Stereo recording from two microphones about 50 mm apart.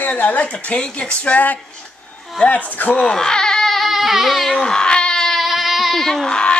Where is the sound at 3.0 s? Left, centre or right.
Centre.